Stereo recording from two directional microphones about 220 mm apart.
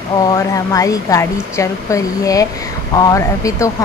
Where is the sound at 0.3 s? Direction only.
15° left (ahead or behind).